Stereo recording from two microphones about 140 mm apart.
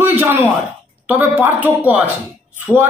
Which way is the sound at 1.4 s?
10° right (ahead or behind).